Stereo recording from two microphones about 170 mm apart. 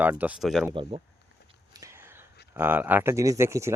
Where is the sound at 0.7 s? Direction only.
30° right (ahead or behind).